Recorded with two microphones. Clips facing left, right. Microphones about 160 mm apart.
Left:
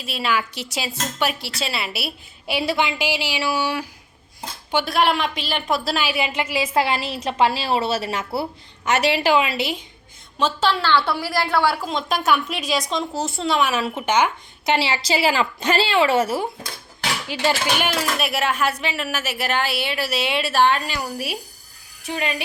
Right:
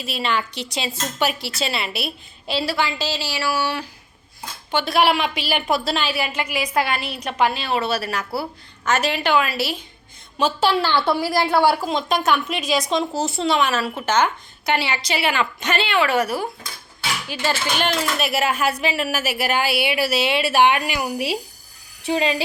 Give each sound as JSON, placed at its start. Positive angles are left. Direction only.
{"t": 0.0, "sound": "a woman's voice", "side_deg": 0}
{"t": 2.6, "sound": "a woman's voice", "side_deg": 20}
{"t": 4.9, "sound": "a woman's voice", "side_deg": -5}
{"t": 6.1, "sound": "a woman's voice", "side_deg": 20}
{"t": 9.0, "sound": "a woman's voice", "side_deg": 80}
{"t": 9.3, "sound": "a woman's voice", "side_deg": 25}
{"t": 10.3, "sound": "speech", "side_deg": -10}
{"t": 11.8, "sound": "a woman's voice", "side_deg": -5}
{"t": 13.8, "sound": "a woman's voice", "side_deg": 15}
{"t": 17.7, "sound": "speech", "side_deg": 5}
{"t": 22.0, "sound": "speech", "side_deg": -30}